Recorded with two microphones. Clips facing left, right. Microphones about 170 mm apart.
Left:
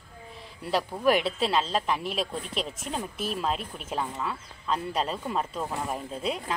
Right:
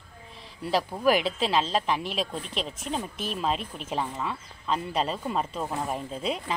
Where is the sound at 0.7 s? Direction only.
Centre (ahead or behind).